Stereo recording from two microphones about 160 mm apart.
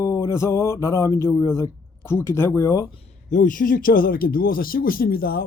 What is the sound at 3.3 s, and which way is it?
Speech, 55° left (ahead or behind).